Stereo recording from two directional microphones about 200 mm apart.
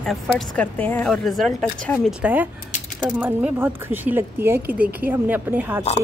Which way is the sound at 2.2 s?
10° right (ahead or behind).